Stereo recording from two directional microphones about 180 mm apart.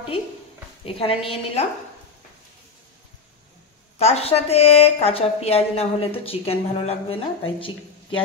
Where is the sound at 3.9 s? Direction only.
35° left (ahead or behind).